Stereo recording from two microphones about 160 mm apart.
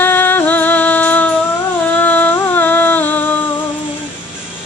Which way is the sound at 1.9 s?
10° left (ahead or behind).